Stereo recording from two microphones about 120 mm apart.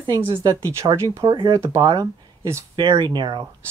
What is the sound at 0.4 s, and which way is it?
Speech, 25° right (ahead or behind).